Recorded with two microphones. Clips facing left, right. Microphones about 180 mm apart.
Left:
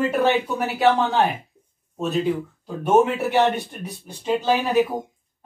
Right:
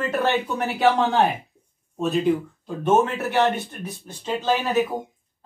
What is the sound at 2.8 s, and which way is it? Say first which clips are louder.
Speech: left 2 dB; 10° left (ahead or behind).